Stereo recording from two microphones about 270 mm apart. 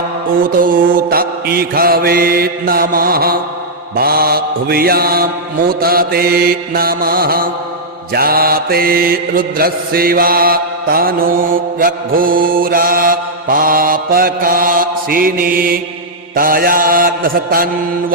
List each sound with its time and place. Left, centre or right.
0.3 s mantra: right